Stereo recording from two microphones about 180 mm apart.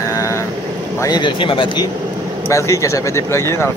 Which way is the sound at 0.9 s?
20° left (ahead or behind).